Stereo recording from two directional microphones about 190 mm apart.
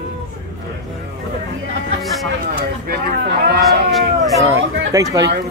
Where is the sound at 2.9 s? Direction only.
55° right (ahead or behind).